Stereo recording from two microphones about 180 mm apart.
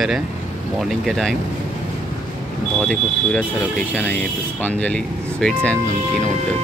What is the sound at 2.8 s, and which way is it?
Speech, 5° left (ahead or behind).